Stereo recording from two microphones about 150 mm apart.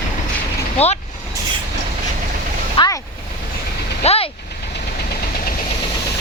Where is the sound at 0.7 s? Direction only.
45° left (ahead or behind).